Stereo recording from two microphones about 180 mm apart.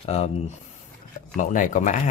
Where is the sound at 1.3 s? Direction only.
45° left (ahead or behind).